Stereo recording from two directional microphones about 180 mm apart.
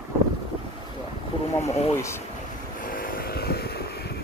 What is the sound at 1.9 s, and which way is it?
Speech, 15° left (ahead or behind).